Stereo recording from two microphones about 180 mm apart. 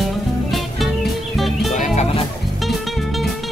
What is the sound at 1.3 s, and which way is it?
Music, centre (ahead or behind).